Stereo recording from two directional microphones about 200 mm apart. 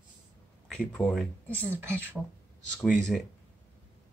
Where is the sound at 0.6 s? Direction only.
5° left (ahead or behind).